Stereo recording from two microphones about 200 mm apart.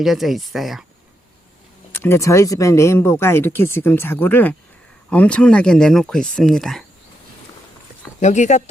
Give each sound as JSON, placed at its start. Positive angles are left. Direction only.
{"t": 0.0, "sound": "speech", "side_deg": 0}
{"t": 1.9, "sound": "speech", "side_deg": 10}
{"t": 8.2, "sound": "speech", "side_deg": 35}